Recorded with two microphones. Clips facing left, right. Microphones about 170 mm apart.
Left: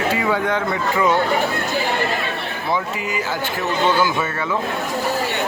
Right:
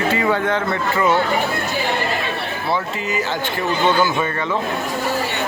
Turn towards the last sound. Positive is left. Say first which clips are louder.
# right 1 dB
turn(degrees=5)  # may be behind; listen again after turning